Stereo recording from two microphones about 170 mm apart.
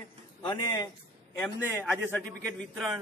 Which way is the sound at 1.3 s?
10° left (ahead or behind).